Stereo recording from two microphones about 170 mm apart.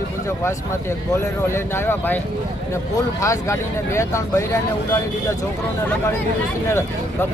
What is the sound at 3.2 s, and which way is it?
Speech, 20° left (ahead or behind).